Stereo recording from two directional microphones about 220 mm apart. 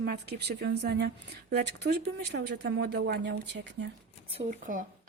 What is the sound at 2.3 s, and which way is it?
Speech, 50° right (ahead or behind).